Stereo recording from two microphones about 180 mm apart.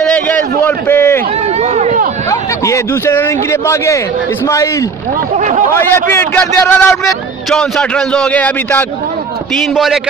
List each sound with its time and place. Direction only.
0.0 s a sound: 10° left (ahead or behind)
1.6 s run: 40° right (ahead or behind)
2.6 s speech: 15° left (ahead or behind)
5.7 s a man's voice: 15° left (ahead or behind)